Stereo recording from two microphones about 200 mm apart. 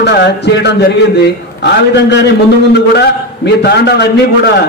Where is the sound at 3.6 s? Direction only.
55° left (ahead or behind).